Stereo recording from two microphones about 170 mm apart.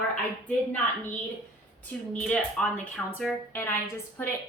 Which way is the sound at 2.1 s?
5° left (ahead or behind).